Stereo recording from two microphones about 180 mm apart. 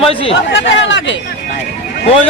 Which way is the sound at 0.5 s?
90° left.